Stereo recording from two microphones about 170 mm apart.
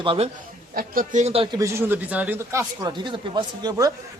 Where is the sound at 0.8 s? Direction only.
50° right (ahead or behind).